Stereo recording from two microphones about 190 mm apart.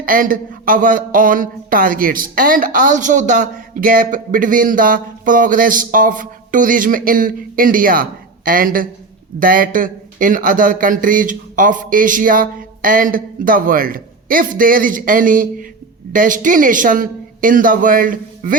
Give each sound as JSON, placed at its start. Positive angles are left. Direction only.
{"t": 0.0, "sound": "speech", "side_deg": -45}